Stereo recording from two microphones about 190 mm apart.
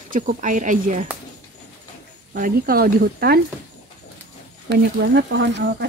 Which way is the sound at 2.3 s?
50° right (ahead or behind).